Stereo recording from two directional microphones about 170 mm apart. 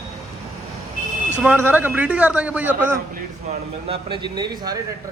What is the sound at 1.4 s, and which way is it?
A man's voice, 10° right (ahead or behind).